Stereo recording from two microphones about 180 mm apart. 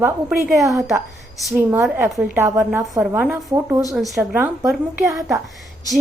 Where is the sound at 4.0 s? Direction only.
Centre (ahead or behind).